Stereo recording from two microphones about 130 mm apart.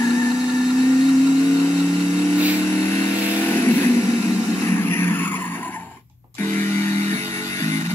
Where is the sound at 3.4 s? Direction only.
20° left (ahead or behind).